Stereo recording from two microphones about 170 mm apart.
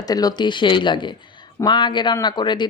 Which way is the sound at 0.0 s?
20° left (ahead or behind).